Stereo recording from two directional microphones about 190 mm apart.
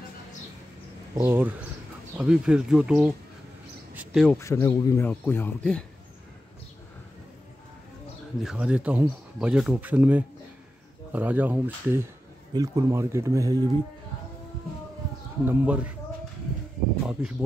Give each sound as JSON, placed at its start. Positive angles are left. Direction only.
{"t": 1.1, "sound": "speech", "side_deg": -10}
{"t": 3.9, "sound": "a sound", "side_deg": -5}
{"t": 4.4, "sound": "speech", "side_deg": 15}
{"t": 8.4, "sound": "speech", "side_deg": -5}
{"t": 15.4, "sound": "speech", "side_deg": -5}
{"t": 17.1, "sound": "speech", "side_deg": -5}